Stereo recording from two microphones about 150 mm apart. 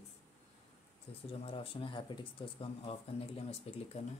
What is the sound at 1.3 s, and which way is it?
Speech, 40° left (ahead or behind).